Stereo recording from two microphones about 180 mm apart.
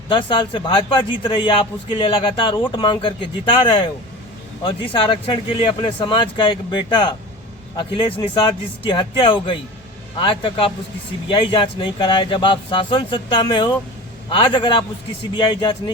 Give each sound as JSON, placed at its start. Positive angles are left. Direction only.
{"t": 0.1, "sound": "a man's voice", "side_deg": 25}